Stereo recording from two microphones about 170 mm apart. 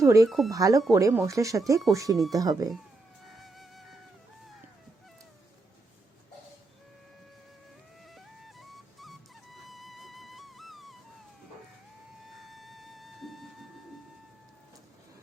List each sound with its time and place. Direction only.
0.0 s speech: 20° right (ahead or behind)
0.3 s speech: centre (ahead or behind)
0.5 s speech: 20° right (ahead or behind)
3.3 s music: centre (ahead or behind)
8.0 s music: centre (ahead or behind)
12.4 s music: centre (ahead or behind)